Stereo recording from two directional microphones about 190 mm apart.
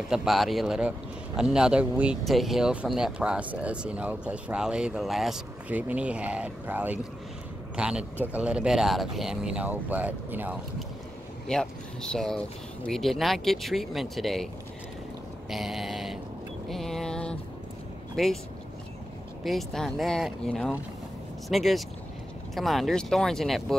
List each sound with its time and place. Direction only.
0.1 s a man's voice: centre (ahead or behind)
11.4 s a man's voice: 5° left (ahead or behind)
15.5 s a man's voice: centre (ahead or behind)
16.6 s vehicle: centre (ahead or behind)
18.1 s speech: centre (ahead or behind)
19.4 s a man's voice: centre (ahead or behind)